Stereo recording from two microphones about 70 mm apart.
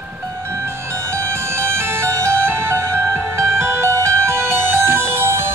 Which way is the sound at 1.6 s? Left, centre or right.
Right.